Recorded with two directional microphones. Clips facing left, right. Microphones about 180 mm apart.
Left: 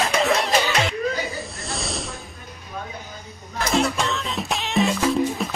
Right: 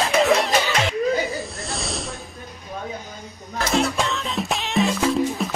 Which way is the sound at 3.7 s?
Centre (ahead or behind).